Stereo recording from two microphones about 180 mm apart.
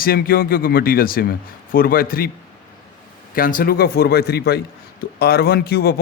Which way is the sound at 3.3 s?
50° left (ahead or behind).